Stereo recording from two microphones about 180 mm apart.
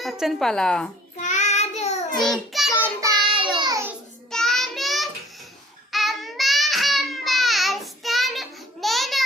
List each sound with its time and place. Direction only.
0.0 s speech: centre (ahead or behind)
1.1 s child singing: 40° left (ahead or behind)
2.2 s child singing: centre (ahead or behind)
3.0 s child singing: 30° right (ahead or behind)
3.6 s a sound: 20° right (ahead or behind)
4.3 s child singing: centre (ahead or behind)
5.9 s babbling: centre (ahead or behind)